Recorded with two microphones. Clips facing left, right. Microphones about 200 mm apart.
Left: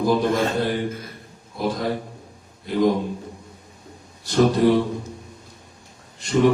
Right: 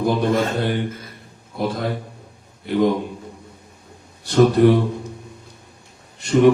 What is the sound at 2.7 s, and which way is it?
Speech, 65° right (ahead or behind).